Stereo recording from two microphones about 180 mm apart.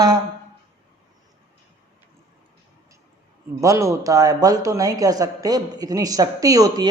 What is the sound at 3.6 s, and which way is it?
Speech, 15° right (ahead or behind).